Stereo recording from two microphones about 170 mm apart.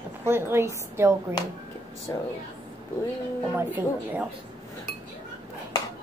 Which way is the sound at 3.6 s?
10° right (ahead or behind).